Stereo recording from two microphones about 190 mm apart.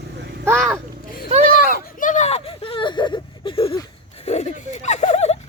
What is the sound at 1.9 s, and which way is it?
Whimper, 40° left (ahead or behind).